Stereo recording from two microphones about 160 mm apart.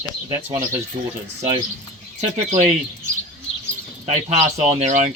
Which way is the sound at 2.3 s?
50° right (ahead or behind).